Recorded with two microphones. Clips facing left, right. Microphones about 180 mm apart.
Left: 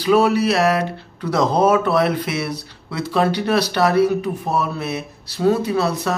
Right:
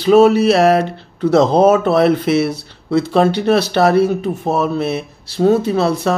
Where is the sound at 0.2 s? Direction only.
25° right (ahead or behind).